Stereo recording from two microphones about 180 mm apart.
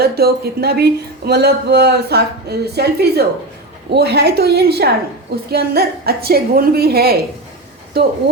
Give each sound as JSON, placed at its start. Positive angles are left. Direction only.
{"t": 0.0, "sound": "speech", "side_deg": -60}